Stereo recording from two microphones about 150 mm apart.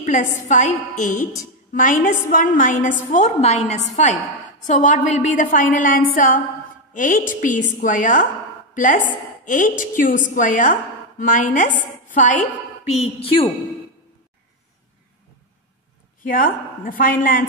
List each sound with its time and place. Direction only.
0.0 s a woman's voice: 60° left (ahead or behind)
12.9 s a woman's voice: 40° left (ahead or behind)
16.2 s a woman's voice: 65° left (ahead or behind)